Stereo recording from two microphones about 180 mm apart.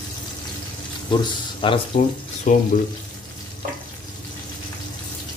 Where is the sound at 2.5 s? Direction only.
45° left (ahead or behind).